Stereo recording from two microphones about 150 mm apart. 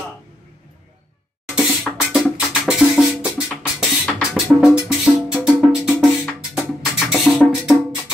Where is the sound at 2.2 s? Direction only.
Centre (ahead or behind).